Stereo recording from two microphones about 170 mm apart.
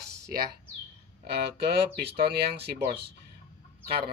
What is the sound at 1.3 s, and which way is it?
Speech, 75° right (ahead or behind).